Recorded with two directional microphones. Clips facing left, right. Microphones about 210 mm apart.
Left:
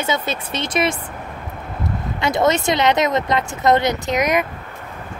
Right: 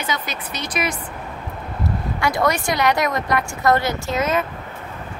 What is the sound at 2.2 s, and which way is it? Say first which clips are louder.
Speech: left 3 dB; 20° left (ahead or behind).